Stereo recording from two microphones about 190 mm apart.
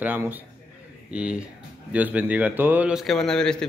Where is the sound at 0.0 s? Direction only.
10° right (ahead or behind).